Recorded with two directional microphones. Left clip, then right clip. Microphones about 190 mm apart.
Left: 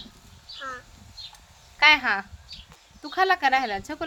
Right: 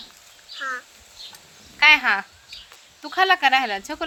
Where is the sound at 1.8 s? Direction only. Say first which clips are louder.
Right 3 dB; 10° right (ahead or behind).